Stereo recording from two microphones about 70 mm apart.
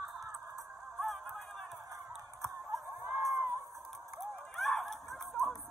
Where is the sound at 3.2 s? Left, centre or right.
Right.